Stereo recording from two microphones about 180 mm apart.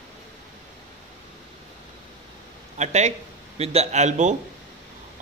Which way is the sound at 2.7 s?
40° right (ahead or behind).